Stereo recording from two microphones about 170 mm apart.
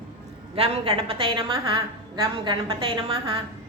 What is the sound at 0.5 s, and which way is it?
A woman's voice, 35° right (ahead or behind).